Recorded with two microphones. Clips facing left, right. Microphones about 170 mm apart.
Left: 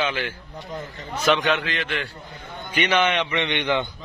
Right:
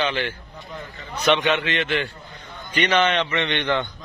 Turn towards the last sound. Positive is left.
turn(degrees=15)  # may be behind; listen again after turning